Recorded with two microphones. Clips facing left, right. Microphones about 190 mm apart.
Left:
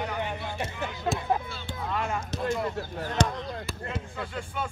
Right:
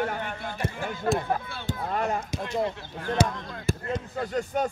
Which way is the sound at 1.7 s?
45° right (ahead or behind).